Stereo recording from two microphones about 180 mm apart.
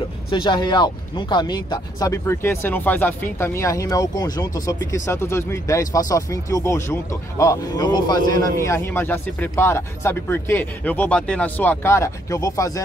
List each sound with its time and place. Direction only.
0.3 s speech: 25° left (ahead or behind)